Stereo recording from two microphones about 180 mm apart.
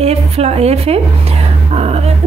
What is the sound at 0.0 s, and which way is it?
A woman's voice, 35° right (ahead or behind).